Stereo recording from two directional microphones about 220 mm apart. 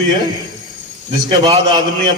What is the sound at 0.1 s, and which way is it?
Speech, 20° right (ahead or behind).